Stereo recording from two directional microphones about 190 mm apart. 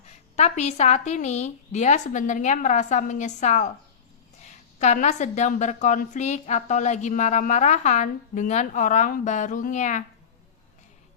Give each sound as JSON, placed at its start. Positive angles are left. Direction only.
{"t": 0.3, "sound": "a woman's voice", "side_deg": 35}